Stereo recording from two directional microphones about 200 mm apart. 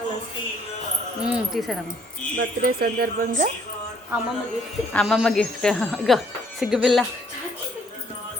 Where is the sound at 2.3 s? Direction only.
50° right (ahead or behind).